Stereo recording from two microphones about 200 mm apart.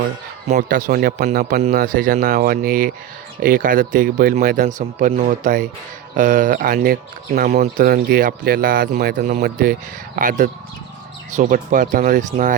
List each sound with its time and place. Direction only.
0.4 s speech: 40° right (ahead or behind)